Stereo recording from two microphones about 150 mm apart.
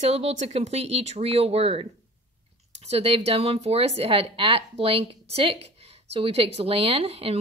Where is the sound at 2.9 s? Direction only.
40° right (ahead or behind).